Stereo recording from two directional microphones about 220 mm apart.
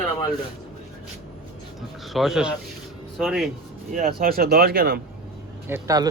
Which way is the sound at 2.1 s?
Centre (ahead or behind).